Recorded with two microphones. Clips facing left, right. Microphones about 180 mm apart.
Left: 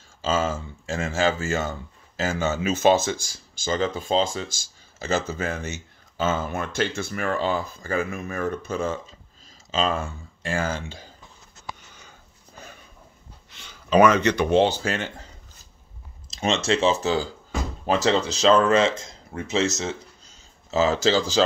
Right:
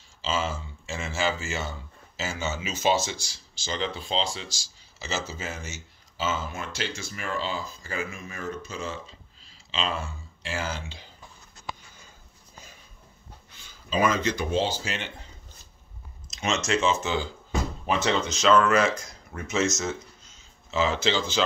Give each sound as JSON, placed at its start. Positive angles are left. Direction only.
{"t": 0.2, "sound": "speech", "side_deg": 50}
{"t": 13.5, "sound": "speech", "side_deg": 75}
{"t": 16.3, "sound": "speech", "side_deg": 30}
{"t": 20.7, "sound": "speech", "side_deg": 40}